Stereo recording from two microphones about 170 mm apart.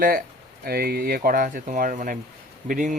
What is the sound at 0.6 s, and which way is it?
Speech, 65° right (ahead or behind).